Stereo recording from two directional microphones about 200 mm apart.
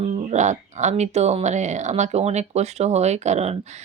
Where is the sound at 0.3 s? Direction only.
35° right (ahead or behind).